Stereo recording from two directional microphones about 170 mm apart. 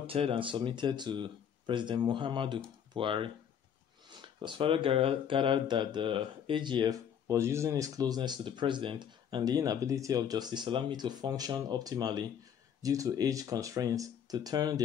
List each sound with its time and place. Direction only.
0.0 s speech: 35° right (ahead or behind)